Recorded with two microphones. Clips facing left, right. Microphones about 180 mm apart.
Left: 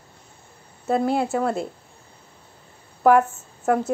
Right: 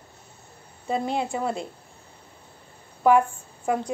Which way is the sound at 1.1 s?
5° left (ahead or behind).